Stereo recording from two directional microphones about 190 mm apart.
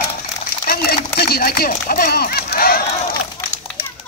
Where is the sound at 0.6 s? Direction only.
50° left (ahead or behind).